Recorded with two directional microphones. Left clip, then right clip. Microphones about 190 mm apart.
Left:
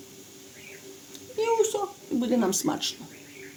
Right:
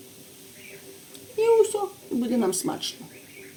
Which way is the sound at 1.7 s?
30° left (ahead or behind).